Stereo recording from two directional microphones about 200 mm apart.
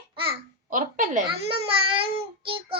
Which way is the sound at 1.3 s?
30° right (ahead or behind).